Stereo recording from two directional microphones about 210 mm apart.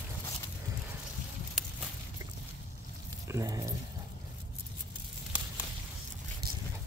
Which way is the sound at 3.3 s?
15° right (ahead or behind).